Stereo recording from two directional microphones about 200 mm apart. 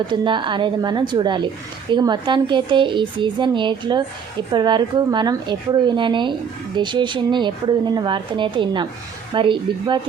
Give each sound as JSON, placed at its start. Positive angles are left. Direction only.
{"t": 0.1, "sound": "speech", "side_deg": -25}